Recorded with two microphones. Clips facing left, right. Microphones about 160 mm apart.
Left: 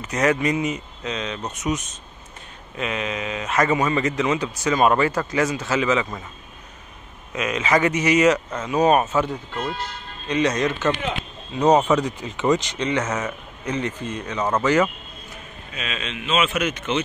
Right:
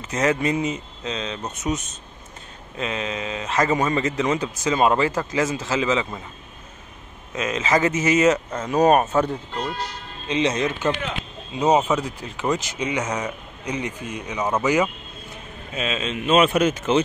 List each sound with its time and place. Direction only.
0.0 s a man's voice: 25° right (ahead or behind)
4.6 s a man's voice: 25° right (ahead or behind)
7.3 s a man's voice: 25° right (ahead or behind)
8.6 s speech: 40° right (ahead or behind)
10.2 s a man's voice: 20° right (ahead or behind)
11.5 s speech: 10° right (ahead or behind)
15.7 s a man's voice: 30° right (ahead or behind)
16.1 s a man's voice: 40° right (ahead or behind)